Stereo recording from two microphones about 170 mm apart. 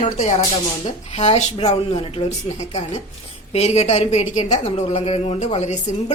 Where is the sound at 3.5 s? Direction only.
40° left (ahead or behind).